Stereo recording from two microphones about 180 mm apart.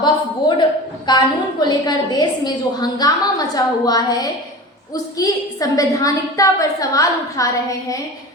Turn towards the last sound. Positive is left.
turn(degrees=20)  # may be behind; listen again after turning